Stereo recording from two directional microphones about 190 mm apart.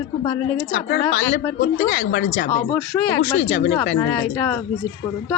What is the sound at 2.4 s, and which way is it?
A woman's voice, 40° left (ahead or behind).